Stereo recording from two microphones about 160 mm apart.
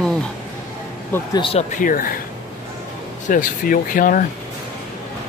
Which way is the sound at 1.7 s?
55° left (ahead or behind).